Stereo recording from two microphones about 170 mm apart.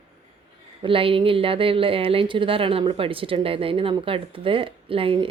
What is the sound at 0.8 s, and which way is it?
Speech, 30° right (ahead or behind).